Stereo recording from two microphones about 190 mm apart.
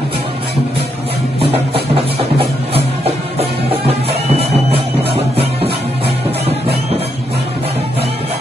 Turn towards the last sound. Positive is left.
turn(degrees=-30)  # may be behind; listen again after turning